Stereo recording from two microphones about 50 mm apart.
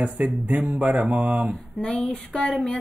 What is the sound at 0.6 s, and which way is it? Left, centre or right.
Speech, centre.